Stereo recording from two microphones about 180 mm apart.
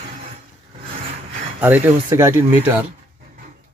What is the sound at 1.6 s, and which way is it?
Speech, 10° right (ahead or behind).